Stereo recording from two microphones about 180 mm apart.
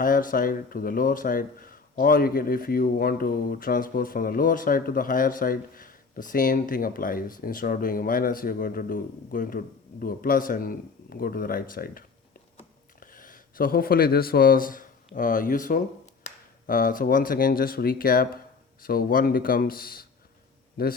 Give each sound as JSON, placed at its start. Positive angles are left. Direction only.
{"t": 0.0, "sound": "a man's voice", "side_deg": 50}